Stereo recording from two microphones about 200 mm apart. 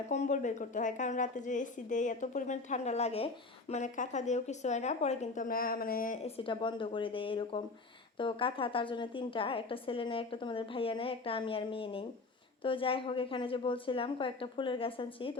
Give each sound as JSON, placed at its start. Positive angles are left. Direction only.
{"t": 0.1, "sound": "a woman's voice", "side_deg": 35}
{"t": 6.2, "sound": "a woman's voice", "side_deg": 30}